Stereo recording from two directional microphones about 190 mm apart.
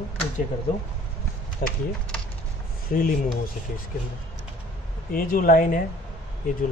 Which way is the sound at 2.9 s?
50° left (ahead or behind).